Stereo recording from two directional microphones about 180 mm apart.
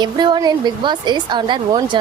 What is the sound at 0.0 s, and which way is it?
Speech, 25° right (ahead or behind).